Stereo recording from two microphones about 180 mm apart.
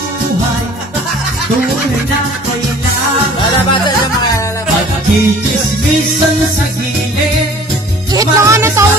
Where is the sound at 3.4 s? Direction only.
25° left (ahead or behind).